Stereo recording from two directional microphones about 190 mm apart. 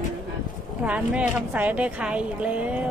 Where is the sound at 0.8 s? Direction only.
5° right (ahead or behind).